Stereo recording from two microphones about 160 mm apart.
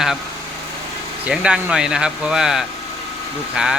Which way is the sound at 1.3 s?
5° right (ahead or behind).